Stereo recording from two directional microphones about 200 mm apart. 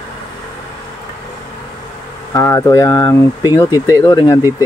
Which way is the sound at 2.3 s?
15° left (ahead or behind).